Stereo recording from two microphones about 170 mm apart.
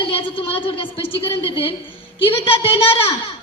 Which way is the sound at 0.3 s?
35° left (ahead or behind).